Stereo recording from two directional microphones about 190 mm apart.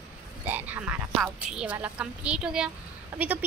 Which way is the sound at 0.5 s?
10° right (ahead or behind).